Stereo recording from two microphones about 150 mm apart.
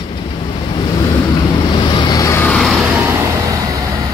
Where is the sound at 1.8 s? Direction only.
30° left (ahead or behind).